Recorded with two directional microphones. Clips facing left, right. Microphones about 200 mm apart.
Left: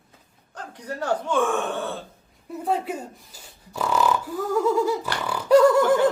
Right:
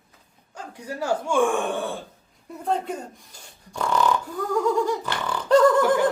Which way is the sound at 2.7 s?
5° left (ahead or behind).